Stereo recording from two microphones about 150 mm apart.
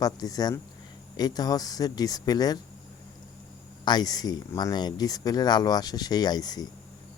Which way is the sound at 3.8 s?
25° left (ahead or behind).